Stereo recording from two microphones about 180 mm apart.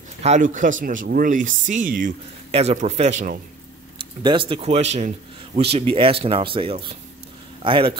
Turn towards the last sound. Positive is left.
turn(degrees=-30)  # may be behind; listen again after turning